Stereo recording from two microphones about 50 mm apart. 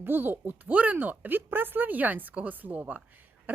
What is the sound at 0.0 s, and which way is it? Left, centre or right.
A woman's voice, right.